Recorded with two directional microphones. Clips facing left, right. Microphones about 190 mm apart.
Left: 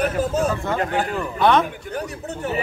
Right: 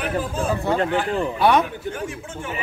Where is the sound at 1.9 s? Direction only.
40° left (ahead or behind).